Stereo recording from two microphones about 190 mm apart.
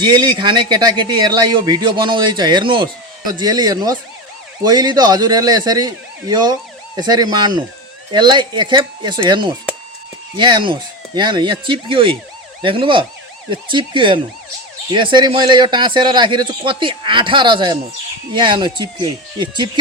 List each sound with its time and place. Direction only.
0.0 s a man's voice: 25° right (ahead or behind)